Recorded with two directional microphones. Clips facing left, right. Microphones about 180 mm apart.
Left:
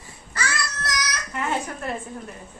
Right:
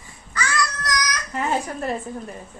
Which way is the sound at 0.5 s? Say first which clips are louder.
Right 4 dB; 25° left (ahead or behind).